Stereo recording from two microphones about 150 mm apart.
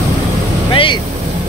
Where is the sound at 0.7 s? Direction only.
35° left (ahead or behind).